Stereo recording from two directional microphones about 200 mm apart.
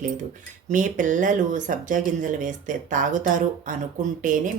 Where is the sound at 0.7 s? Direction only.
40° right (ahead or behind).